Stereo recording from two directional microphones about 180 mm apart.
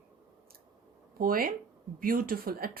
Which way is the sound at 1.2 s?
55° right (ahead or behind).